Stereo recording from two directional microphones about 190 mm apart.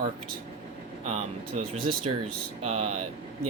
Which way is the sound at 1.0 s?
35° right (ahead or behind).